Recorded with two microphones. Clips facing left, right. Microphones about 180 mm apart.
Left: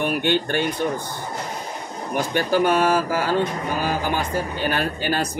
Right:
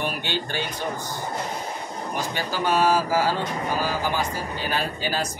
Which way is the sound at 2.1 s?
55° left (ahead or behind).